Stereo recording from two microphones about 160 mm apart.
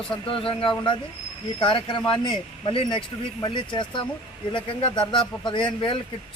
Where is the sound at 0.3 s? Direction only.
35° left (ahead or behind).